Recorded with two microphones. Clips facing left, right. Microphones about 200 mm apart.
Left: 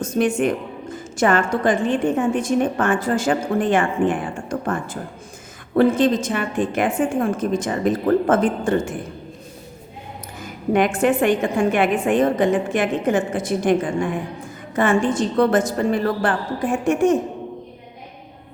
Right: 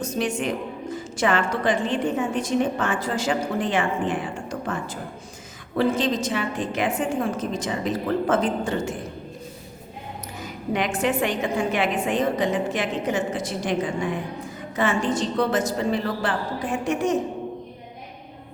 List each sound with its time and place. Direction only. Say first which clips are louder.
0.0 s a woman's voice: left 6 dB; 50° left (ahead or behind)
10.7 s a woman's voice: left 6 dB; 50° left (ahead or behind)